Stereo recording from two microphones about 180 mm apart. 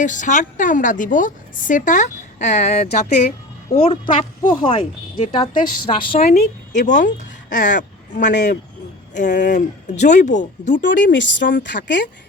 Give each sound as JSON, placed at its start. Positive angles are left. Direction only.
{"t": 0.0, "sound": "a woman's voice", "side_deg": 45}
{"t": 11.1, "sound": "speech", "side_deg": 80}
{"t": 12.0, "sound": "speech", "side_deg": 60}